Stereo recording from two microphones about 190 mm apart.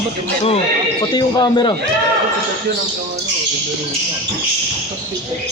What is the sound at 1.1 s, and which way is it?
Speech, 20° left (ahead or behind).